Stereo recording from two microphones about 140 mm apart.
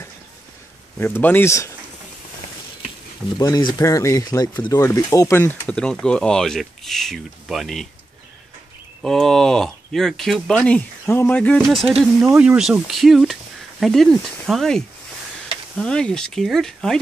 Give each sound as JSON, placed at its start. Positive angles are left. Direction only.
{"t": 0.9, "sound": "speech", "side_deg": 15}
{"t": 3.3, "sound": "speech", "side_deg": 30}
{"t": 9.0, "sound": "speech", "side_deg": 5}
{"t": 15.8, "sound": "speech", "side_deg": 5}